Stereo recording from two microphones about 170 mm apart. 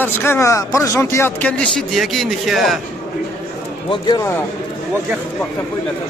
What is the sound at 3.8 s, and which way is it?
Speech, 25° left (ahead or behind).